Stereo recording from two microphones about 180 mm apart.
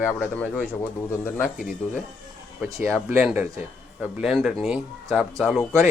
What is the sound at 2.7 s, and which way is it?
Speech, centre (ahead or behind).